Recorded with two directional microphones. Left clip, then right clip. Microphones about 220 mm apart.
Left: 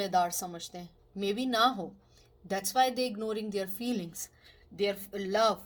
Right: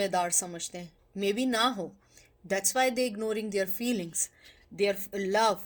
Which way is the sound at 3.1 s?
35° right (ahead or behind).